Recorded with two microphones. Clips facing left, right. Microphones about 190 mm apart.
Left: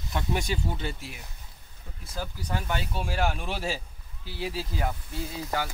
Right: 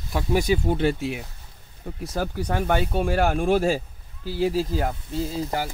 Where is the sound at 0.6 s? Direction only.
65° right (ahead or behind); by 5.4 s 45° right (ahead or behind).